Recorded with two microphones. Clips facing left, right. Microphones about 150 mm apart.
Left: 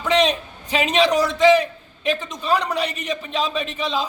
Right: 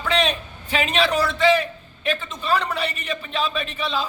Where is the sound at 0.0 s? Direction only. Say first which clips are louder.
Left 4 dB; 20° left (ahead or behind).